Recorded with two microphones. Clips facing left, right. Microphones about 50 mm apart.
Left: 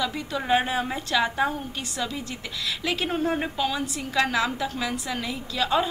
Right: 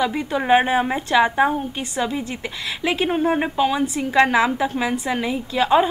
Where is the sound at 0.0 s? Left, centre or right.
Right.